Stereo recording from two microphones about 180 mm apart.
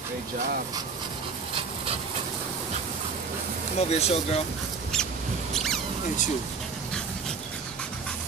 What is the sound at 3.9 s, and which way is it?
Speech, 35° left (ahead or behind).